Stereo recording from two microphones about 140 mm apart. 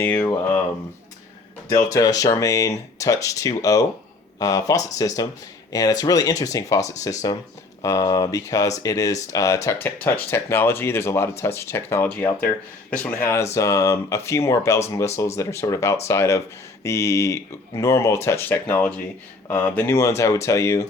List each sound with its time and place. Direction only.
0.0 s speech: 15° left (ahead or behind)
1.7 s speech: 25° left (ahead or behind)